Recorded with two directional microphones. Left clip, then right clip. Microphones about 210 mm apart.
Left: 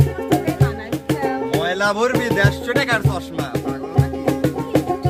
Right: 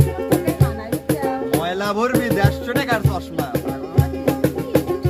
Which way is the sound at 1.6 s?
10° left (ahead or behind).